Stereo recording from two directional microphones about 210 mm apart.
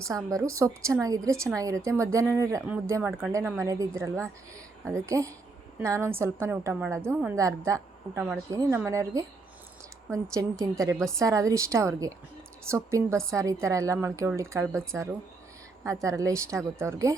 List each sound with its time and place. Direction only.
0.0 s a woman's voice: 15° right (ahead or behind)
7.3 s speech: 15° right (ahead or behind)
15.8 s speech: 15° right (ahead or behind)